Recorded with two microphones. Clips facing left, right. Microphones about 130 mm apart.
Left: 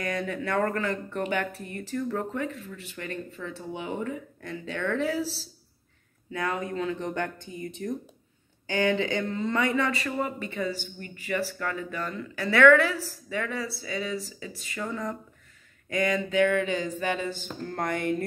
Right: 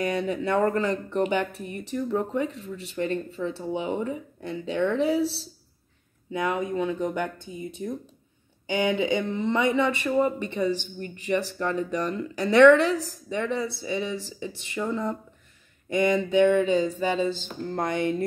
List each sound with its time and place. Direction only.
0.0 s speech: 25° right (ahead or behind)
6.3 s speech: 20° right (ahead or behind)